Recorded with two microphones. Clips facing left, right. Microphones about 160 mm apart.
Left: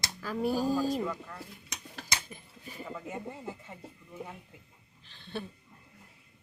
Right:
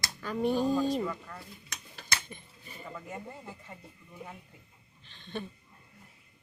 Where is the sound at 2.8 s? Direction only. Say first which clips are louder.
Left 2 dB; 5° left (ahead or behind).